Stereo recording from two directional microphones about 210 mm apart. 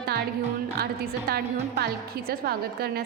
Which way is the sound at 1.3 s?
50° right (ahead or behind).